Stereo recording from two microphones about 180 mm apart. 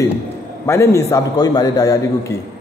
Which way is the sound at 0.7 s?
15° left (ahead or behind).